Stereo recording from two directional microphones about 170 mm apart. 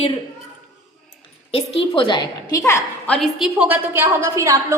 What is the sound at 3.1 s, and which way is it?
A woman's voice, centre (ahead or behind).